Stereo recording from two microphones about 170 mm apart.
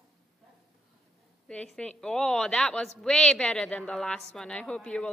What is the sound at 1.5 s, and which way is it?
A woman's voice, 5° left (ahead or behind).